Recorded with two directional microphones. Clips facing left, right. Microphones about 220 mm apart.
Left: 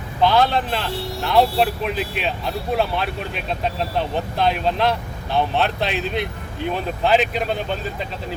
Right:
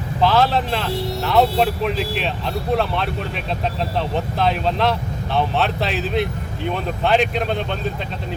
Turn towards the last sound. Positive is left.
turn(degrees=5)  # may be behind; listen again after turning